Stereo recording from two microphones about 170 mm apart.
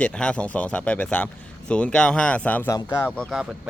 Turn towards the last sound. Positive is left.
turn(degrees=15)  # may be behind; listen again after turning